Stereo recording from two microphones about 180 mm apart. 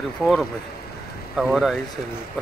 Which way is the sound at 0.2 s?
Centre (ahead or behind).